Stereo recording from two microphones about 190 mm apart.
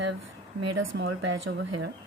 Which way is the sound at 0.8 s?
85° right.